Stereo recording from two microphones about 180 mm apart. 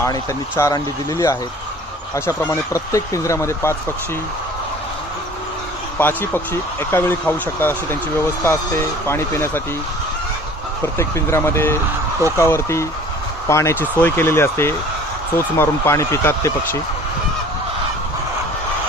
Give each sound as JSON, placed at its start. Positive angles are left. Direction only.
{"t": 0.0, "sound": "speech", "side_deg": 15}
{"t": 6.0, "sound": "speech", "side_deg": 10}
{"t": 9.0, "sound": "speech", "side_deg": 15}
{"t": 10.9, "sound": "speech", "side_deg": 15}